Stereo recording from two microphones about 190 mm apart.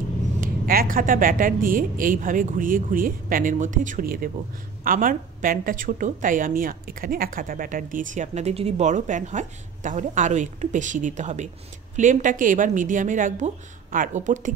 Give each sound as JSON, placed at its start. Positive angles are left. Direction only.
{"t": 0.4, "sound": "a woman's voice", "side_deg": -50}